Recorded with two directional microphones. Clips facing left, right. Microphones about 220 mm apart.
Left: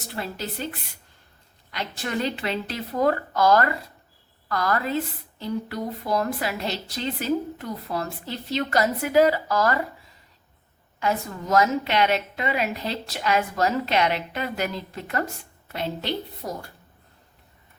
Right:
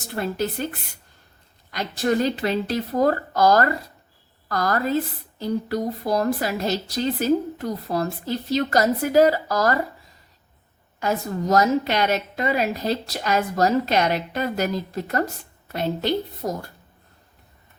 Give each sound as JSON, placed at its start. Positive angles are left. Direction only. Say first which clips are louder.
{"t": 0.2, "sound": "a woman's voice", "louder": "right 6 dB", "side_deg": -50}
{"t": 1.7, "sound": "a woman's voice", "louder": "right 7 dB", "side_deg": -40}
{"t": 11.0, "sound": "a woman's voice", "louder": "right 3 dB", "side_deg": -40}